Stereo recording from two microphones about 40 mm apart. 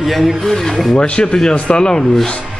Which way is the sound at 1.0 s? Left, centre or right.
Left.